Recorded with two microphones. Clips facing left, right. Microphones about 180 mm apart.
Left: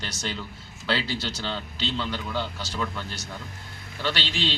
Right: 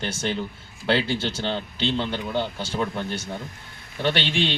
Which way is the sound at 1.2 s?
30° right (ahead or behind).